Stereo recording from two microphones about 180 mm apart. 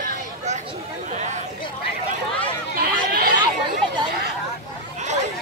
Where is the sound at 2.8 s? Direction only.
55° right (ahead or behind).